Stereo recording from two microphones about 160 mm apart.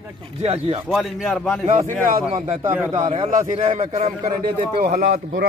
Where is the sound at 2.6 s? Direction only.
10° right (ahead or behind).